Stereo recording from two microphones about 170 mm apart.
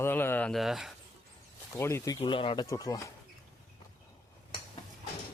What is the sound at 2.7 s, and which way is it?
Speech, 20° left (ahead or behind).